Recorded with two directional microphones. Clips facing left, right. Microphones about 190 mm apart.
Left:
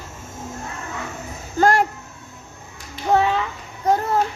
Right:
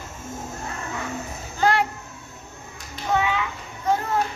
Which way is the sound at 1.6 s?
45° left (ahead or behind).